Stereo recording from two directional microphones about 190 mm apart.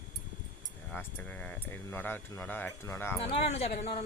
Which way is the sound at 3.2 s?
30° left (ahead or behind).